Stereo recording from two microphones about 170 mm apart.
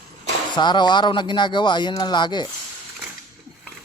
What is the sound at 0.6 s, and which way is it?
Speech, 25° left (ahead or behind).